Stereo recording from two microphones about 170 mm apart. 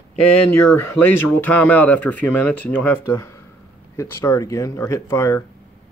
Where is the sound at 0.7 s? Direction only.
10° left (ahead or behind).